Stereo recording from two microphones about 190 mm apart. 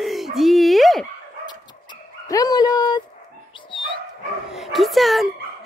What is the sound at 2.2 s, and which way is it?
Dog, 20° left (ahead or behind).